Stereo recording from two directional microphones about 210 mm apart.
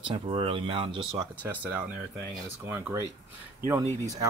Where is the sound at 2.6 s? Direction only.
10° right (ahead or behind).